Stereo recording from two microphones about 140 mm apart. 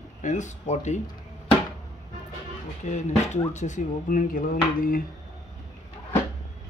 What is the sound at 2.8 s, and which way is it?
Speech, 60° left (ahead or behind).